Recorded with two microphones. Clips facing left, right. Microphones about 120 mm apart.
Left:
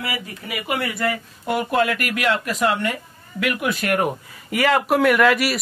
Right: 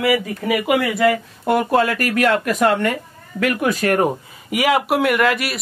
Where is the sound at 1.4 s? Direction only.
45° right (ahead or behind).